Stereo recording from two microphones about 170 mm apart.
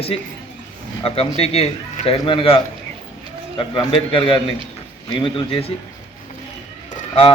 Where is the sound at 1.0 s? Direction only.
35° left (ahead or behind).